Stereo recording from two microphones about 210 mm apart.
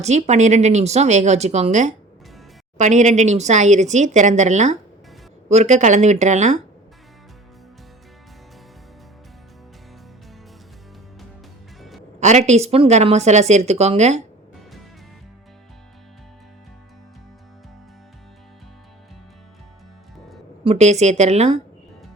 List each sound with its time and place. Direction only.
0.0 s speech: 30° right (ahead or behind)
12.2 s speech: 35° right (ahead or behind)
20.7 s speech: 30° right (ahead or behind)